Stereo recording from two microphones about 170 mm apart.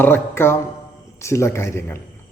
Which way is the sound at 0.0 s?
10° left (ahead or behind).